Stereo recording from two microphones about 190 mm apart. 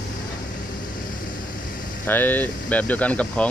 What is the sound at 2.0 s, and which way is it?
Speech, 10° left (ahead or behind).